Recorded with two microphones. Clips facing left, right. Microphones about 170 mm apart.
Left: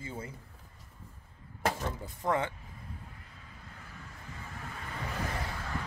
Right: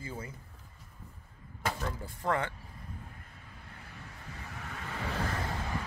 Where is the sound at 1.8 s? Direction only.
20° left (ahead or behind).